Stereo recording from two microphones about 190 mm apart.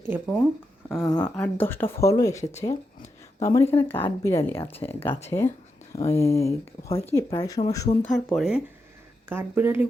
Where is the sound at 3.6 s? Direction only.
30° left (ahead or behind).